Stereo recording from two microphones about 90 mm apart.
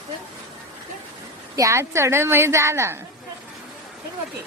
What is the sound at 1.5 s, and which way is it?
A woman's voice, 35° right (ahead or behind).